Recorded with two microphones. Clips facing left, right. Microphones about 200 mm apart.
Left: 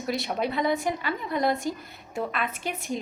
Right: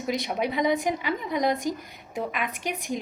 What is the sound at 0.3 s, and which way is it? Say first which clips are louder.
A woman's voice: right 1 dB; 15° right (ahead or behind).